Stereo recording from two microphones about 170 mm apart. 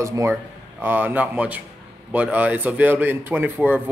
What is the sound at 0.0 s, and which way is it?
Speech, 15° right (ahead or behind).